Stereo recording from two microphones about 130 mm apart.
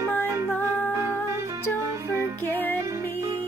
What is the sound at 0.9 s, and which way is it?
Music, 20° right (ahead or behind).